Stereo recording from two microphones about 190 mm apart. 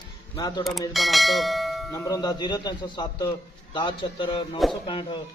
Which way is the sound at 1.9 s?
20° left (ahead or behind).